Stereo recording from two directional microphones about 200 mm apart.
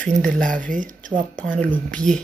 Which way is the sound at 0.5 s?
40° right (ahead or behind).